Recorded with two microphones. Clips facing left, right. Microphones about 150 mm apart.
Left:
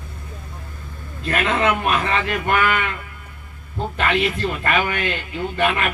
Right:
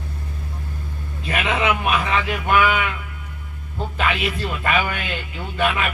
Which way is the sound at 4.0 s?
Centre (ahead or behind).